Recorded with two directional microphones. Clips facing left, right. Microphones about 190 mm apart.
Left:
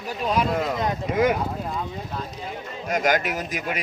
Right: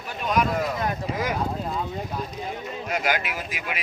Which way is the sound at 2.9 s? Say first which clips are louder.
Left 5 dB; 45° left (ahead or behind).